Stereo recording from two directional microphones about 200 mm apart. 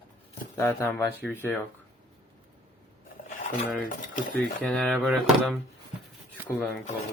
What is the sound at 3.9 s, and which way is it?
Speech, 40° left (ahead or behind).